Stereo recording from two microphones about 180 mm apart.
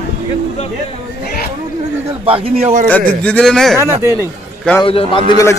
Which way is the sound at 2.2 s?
30° right (ahead or behind).